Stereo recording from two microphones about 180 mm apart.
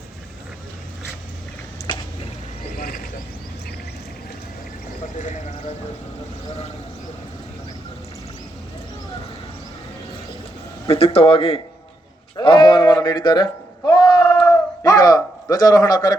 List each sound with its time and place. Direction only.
2.7 s mechanisms: 50° left (ahead or behind)
5.1 s clip-clop: 45° left (ahead or behind)
10.8 s speech: 30° left (ahead or behind)
12.4 s a sound: 25° left (ahead or behind)